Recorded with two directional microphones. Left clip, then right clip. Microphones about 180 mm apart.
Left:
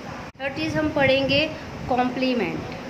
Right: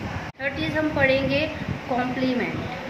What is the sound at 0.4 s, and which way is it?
A woman's voice, 30° left (ahead or behind).